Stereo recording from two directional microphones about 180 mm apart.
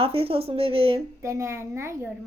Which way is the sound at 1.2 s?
15° right (ahead or behind).